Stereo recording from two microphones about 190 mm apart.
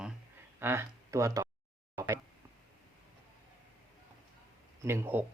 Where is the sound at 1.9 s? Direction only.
15° right (ahead or behind).